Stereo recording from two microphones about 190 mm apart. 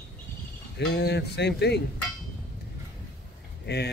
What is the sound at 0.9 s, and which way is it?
Speech, 60° left (ahead or behind).